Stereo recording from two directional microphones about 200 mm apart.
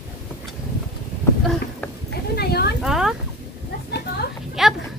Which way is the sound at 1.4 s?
Centre (ahead or behind).